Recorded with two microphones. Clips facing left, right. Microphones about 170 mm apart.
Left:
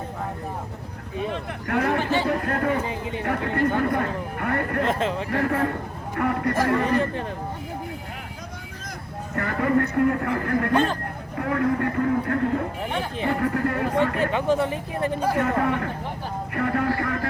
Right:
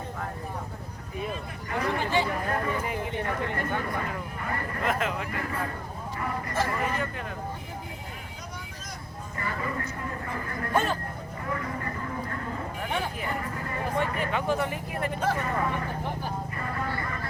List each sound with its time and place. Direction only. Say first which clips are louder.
1.3 s speech: left 7 dB; 65° left (ahead or behind)
4.9 s speech: left 4 dB; 30° left (ahead or behind)
5.3 s speech: left 9 dB; 65° left (ahead or behind)
7.0 s speech: left 7 dB; 30° left (ahead or behind)
9.3 s speech: left 11 dB; 65° left (ahead or behind)
14.3 s speech: left 3 dB; 20° left (ahead or behind)
15.4 s speech: left 6 dB; 65° left (ahead or behind); by 17.2 s 85° left